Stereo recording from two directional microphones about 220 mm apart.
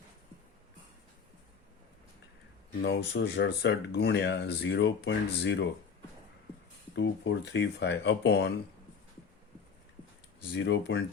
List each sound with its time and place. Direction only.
2.8 s speech: 50° left (ahead or behind)
6.9 s speech: 55° left (ahead or behind)
10.6 s speech: 55° left (ahead or behind)